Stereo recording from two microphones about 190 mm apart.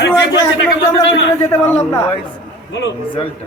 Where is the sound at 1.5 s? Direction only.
10° left (ahead or behind).